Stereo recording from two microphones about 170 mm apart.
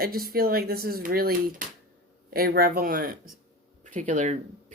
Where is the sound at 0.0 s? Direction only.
60° right (ahead or behind).